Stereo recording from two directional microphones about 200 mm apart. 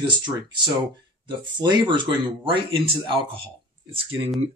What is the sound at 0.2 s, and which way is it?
Speech, 20° right (ahead or behind).